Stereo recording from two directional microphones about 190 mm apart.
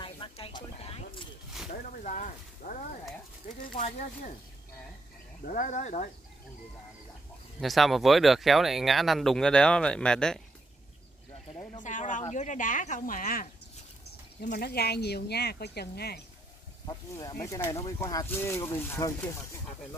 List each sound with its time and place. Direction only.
0.0 s snake: 25° left (ahead or behind)
1.7 s whip: 40° left (ahead or behind)
3.7 s speech: 40° left (ahead or behind)
5.4 s speech: 45° left (ahead or behind)
7.6 s speech: centre (ahead or behind)
11.8 s speech: 40° left (ahead or behind); by 16.2 s 55° left (ahead or behind)
16.8 s speech: 20° left (ahead or behind)